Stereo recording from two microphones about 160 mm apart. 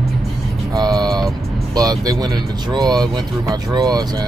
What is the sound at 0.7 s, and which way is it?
Speech, 25° right (ahead or behind).